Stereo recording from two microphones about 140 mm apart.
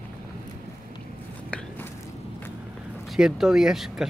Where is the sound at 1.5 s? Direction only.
15° left (ahead or behind).